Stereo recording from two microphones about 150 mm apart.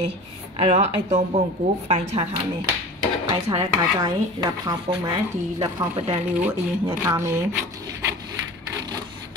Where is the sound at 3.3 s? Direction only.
30° right (ahead or behind).